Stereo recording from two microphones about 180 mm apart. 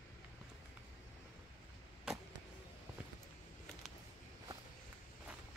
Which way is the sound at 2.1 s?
5° right (ahead or behind).